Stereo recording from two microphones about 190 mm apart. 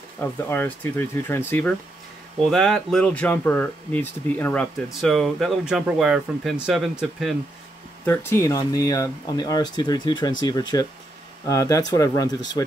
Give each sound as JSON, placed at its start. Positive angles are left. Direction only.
{"t": 0.2, "sound": "speech", "side_deg": 10}
{"t": 8.0, "sound": "speech", "side_deg": 10}